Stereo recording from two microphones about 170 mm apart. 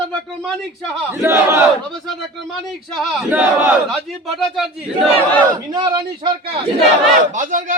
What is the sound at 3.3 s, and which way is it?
Battle cry, 10° right (ahead or behind).